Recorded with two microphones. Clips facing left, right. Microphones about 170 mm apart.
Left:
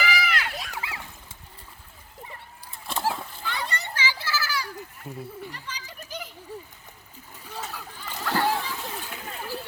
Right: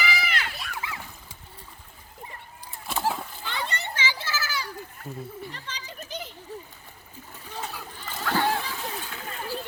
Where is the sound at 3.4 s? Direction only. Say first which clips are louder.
Left 1 dB; 20° right (ahead or behind).